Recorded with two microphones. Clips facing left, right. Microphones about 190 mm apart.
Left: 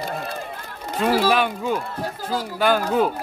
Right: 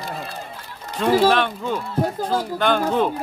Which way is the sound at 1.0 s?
5° left (ahead or behind).